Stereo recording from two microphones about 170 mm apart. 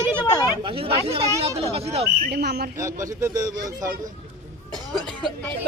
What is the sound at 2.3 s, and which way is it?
Speech, 75° right (ahead or behind).